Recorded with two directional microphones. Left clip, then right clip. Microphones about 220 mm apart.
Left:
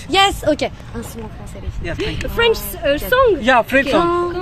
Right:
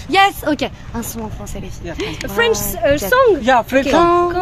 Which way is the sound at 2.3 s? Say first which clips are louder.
Right 1 dB; 45° right (ahead or behind).